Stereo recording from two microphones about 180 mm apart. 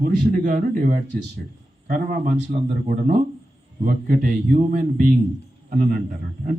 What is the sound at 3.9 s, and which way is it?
A man's voice, 50° right (ahead or behind).